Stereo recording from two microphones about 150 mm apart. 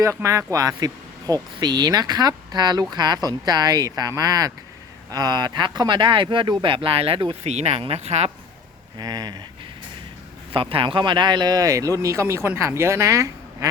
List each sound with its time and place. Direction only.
0.0 s speech: 20° right (ahead or behind); by 8.3 s 45° right (ahead or behind)
9.0 s speech: 25° right (ahead or behind)
10.5 s speech: 35° right (ahead or behind)